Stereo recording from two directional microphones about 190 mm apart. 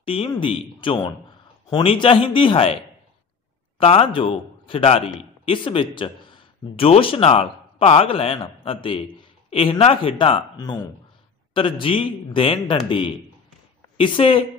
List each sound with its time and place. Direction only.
0.0 s a man's voice: 30° left (ahead or behind)
3.8 s a man's voice: 30° left (ahead or behind)